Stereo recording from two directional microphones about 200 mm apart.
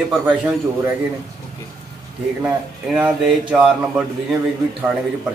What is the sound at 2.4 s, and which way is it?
A man's voice, 5° right (ahead or behind).